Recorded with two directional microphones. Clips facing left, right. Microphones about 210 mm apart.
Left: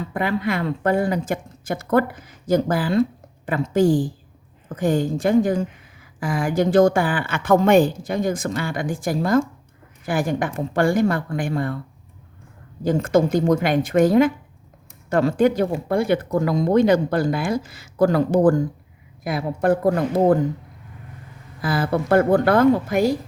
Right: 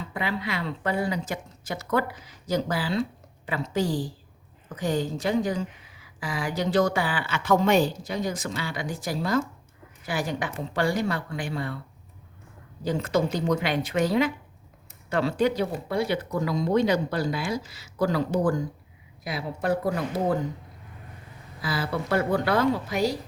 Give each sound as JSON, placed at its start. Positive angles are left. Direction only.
{"t": 0.0, "sound": "a woman's voice", "side_deg": 50}
{"t": 12.8, "sound": "a woman's voice", "side_deg": 50}
{"t": 21.6, "sound": "a woman's voice", "side_deg": 50}